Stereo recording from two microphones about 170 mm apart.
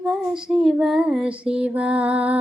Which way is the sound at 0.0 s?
Centre (ahead or behind).